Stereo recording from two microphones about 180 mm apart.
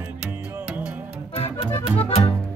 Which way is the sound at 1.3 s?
30° left (ahead or behind).